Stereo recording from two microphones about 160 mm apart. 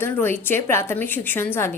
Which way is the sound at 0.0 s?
15° left (ahead or behind).